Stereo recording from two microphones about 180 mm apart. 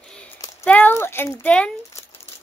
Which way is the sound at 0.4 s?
15° left (ahead or behind).